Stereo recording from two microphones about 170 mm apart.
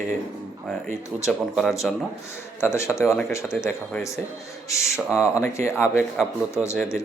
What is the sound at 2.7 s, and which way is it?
Speech, 15° left (ahead or behind).